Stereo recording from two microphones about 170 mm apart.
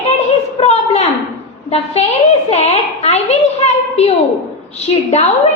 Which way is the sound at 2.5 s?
40° left (ahead or behind).